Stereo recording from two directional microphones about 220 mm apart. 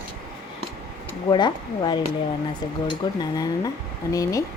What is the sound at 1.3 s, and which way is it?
Speech, 20° left (ahead or behind).